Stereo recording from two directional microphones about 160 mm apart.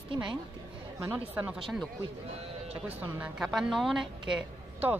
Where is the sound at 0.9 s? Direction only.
15° right (ahead or behind).